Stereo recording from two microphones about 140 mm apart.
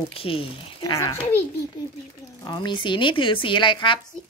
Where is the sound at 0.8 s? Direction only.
20° left (ahead or behind).